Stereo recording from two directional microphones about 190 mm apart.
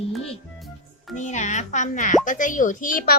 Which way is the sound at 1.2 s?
40° left (ahead or behind).